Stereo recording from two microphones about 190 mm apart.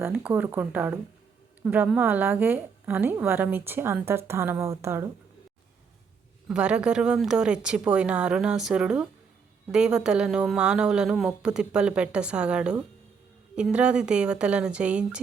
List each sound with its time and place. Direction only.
0.0 s a woman's voice: 10° right (ahead or behind)
6.5 s speech: 5° right (ahead or behind)